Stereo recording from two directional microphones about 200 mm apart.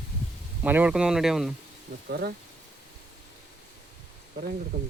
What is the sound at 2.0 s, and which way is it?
Speech, 50° right (ahead or behind).